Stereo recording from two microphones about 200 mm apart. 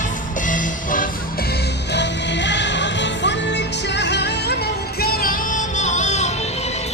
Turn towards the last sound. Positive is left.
turn(degrees=35)  # may be behind; listen again after turning